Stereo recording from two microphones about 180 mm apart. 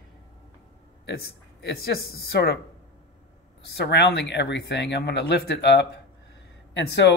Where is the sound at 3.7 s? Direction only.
70° left (ahead or behind).